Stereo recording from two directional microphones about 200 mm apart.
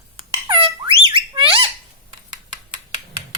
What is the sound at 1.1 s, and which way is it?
Squawk, 25° right (ahead or behind).